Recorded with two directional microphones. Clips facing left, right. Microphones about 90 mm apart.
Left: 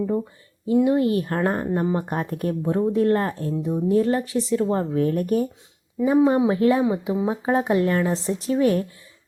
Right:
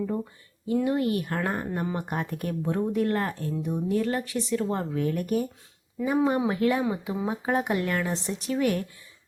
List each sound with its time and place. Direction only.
0.7 s speech: 25° left (ahead or behind); by 5.5 s 40° left (ahead or behind)
6.0 s speech: 20° left (ahead or behind)